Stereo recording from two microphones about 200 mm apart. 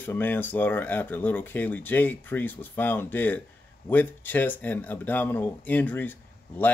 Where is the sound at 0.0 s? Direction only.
10° left (ahead or behind).